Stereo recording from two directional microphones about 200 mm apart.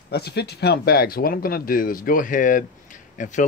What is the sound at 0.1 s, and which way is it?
Speech, 55° left (ahead or behind).